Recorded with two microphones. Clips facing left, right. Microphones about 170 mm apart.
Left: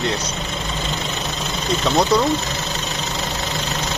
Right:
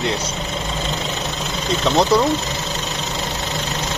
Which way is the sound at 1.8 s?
Centre (ahead or behind).